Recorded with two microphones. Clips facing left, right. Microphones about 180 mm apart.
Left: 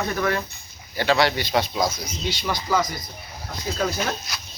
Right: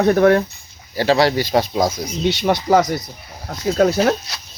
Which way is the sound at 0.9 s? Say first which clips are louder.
Right 5 dB; 35° right (ahead or behind).